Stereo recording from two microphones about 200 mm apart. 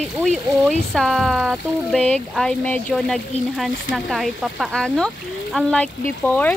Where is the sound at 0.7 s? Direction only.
Centre (ahead or behind).